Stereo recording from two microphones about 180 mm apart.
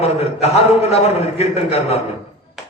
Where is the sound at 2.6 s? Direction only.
5° right (ahead or behind).